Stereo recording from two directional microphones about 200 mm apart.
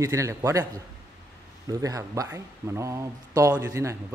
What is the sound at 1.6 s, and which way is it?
Speech, 15° right (ahead or behind).